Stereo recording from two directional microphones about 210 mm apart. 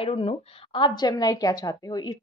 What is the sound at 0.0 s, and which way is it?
A woman's voice, 25° left (ahead or behind).